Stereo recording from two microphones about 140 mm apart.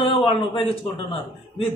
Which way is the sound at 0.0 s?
40° left (ahead or behind).